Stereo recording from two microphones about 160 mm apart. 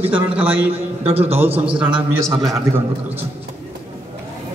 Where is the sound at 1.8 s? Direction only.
10° right (ahead or behind).